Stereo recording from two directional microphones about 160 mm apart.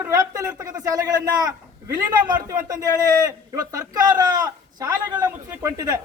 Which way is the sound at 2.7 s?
25° right (ahead or behind).